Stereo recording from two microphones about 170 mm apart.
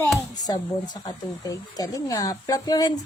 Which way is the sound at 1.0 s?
20° left (ahead or behind).